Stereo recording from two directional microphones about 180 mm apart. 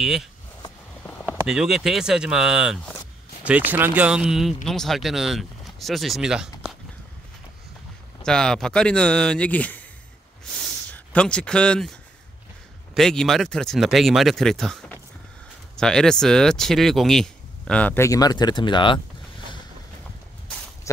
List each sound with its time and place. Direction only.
0.0 s speech: centre (ahead or behind)
1.5 s speech: centre (ahead or behind)
8.3 s speech: 5° left (ahead or behind)
10.5 s a sound: 5° left (ahead or behind)
12.9 s speech: 5° left (ahead or behind); by 18.9 s 25° left (ahead or behind)